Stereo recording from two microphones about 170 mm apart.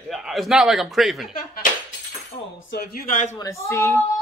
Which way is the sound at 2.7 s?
60° left (ahead or behind).